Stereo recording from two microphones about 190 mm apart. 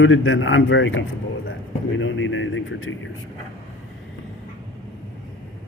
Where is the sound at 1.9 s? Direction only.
85° left.